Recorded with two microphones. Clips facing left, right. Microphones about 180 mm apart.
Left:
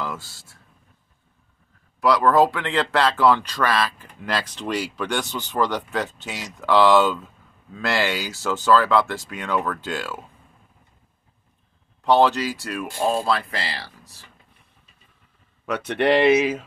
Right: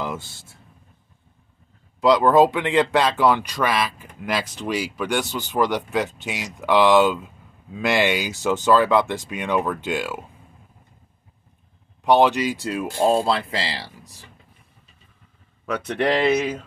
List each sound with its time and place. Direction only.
0.0 s speech: 20° right (ahead or behind)
2.0 s speech: 20° right (ahead or behind)
12.0 s speech: 15° right (ahead or behind)
15.6 s speech: centre (ahead or behind)